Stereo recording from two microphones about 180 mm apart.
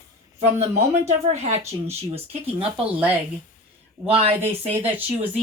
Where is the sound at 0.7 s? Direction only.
35° right (ahead or behind).